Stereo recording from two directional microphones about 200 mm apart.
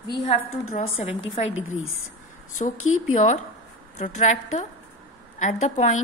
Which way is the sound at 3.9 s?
35° left (ahead or behind).